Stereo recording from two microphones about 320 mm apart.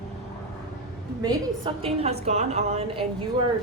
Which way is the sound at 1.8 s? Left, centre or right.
Centre.